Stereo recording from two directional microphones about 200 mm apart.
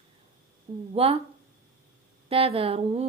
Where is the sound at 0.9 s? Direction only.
30° right (ahead or behind).